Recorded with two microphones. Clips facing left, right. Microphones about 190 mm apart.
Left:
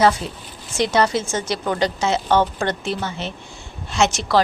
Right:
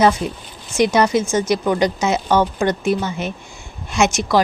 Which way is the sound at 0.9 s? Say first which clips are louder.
Right 1 dB; 15° right (ahead or behind).